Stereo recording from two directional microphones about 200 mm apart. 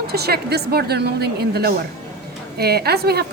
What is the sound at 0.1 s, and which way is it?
A woman's voice, 55° right (ahead or behind).